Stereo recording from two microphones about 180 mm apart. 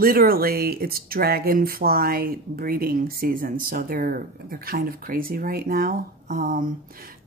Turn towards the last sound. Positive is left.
turn(degrees=-45)  # may be behind; listen again after turning